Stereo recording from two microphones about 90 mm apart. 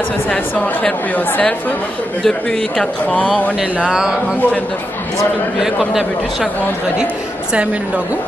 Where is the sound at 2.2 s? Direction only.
10° left (ahead or behind).